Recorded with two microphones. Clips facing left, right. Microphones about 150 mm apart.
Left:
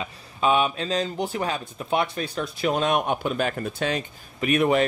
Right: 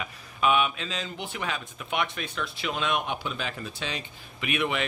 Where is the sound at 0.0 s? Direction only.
30° left (ahead or behind).